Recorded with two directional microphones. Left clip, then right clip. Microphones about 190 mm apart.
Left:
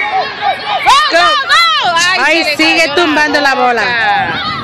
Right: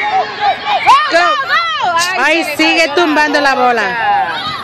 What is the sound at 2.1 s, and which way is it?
Music, centre (ahead or behind).